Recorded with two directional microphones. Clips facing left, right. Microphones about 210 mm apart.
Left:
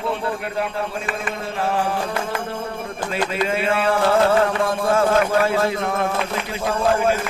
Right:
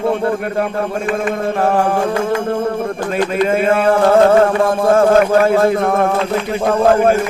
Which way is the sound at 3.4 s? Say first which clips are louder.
Right 7 dB; 45° right (ahead or behind).